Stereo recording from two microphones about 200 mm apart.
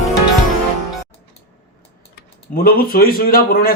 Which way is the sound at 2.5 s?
45° left (ahead or behind).